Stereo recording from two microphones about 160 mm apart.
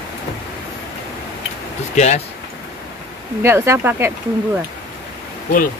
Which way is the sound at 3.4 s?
15° right (ahead or behind).